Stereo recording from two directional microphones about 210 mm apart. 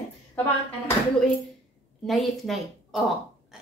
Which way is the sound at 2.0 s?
Centre (ahead or behind).